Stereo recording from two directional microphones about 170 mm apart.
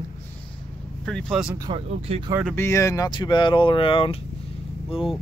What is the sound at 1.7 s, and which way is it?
Speech, 35° right (ahead or behind).